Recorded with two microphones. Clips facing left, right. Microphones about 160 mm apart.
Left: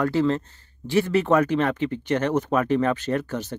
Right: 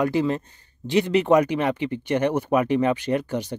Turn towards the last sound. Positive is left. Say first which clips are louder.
# right 2 dB
turn(degrees=-15)  # may be behind; listen again after turning